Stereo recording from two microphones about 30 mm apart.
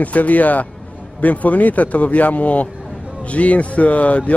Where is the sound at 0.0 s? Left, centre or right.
Left.